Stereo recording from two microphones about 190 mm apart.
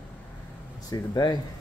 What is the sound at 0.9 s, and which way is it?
Speech, 20° left (ahead or behind).